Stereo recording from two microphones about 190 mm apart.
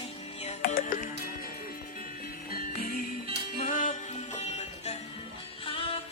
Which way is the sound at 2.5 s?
50° left (ahead or behind).